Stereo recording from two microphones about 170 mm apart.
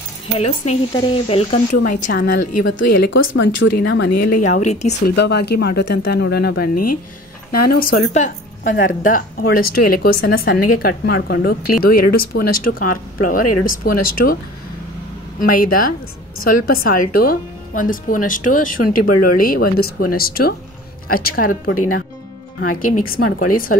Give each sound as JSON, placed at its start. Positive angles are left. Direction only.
{"t": 0.7, "sound": "speech", "side_deg": 35}
{"t": 1.9, "sound": "a woman's voice", "side_deg": 50}
{"t": 3.6, "sound": "speech", "side_deg": 90}
{"t": 4.4, "sound": "a woman's voice", "side_deg": 45}
{"t": 5.0, "sound": "speech", "side_deg": 75}
{"t": 8.1, "sound": "a woman's voice", "side_deg": 45}
{"t": 9.0, "sound": "speech", "side_deg": 55}
{"t": 15.3, "sound": "speech", "side_deg": 55}